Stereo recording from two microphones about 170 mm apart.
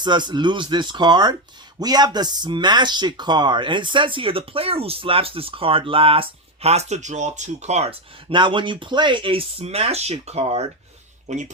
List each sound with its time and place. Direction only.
0.0 s speech: 25° right (ahead or behind); by 11.5 s 45° right (ahead or behind)